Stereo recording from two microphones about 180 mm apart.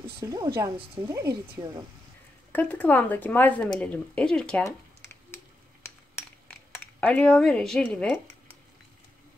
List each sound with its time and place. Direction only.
0.2 s speech: 20° right (ahead or behind)
2.5 s speech: 10° left (ahead or behind)
5.3 s finger snapping: 10° left (ahead or behind)
6.7 s speech: 10° left (ahead or behind)